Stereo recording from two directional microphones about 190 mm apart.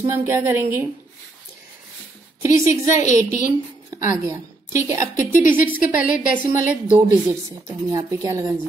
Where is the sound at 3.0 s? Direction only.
40° left (ahead or behind).